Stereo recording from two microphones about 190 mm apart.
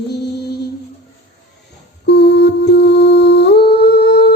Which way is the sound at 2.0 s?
60° left (ahead or behind).